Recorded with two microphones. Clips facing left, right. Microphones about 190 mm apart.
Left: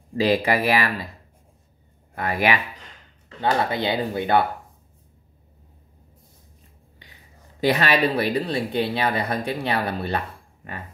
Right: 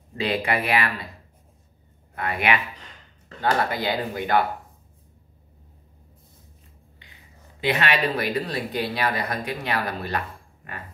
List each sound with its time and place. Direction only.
0.1 s speech: 35° left (ahead or behind)
2.1 s speech: 35° left (ahead or behind)
3.3 s speech: 25° left (ahead or behind)
7.6 s speech: 35° left (ahead or behind)